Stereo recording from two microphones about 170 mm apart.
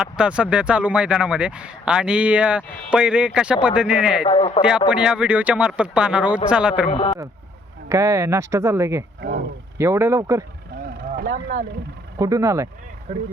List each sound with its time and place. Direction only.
0.0 s speech: 5° right (ahead or behind)
4.3 s a man's voice: 30° left (ahead or behind)
4.9 s speech: 5° right (ahead or behind)
6.9 s a man's voice: 30° left (ahead or behind)
7.9 s speech: 15° right (ahead or behind)
10.8 s vehicle: 55° right (ahead or behind)
12.2 s speech: 20° right (ahead or behind)
13.1 s speech: 35° right (ahead or behind)